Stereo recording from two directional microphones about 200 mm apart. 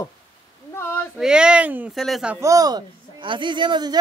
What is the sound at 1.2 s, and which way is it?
A woman's voice, 5° right (ahead or behind).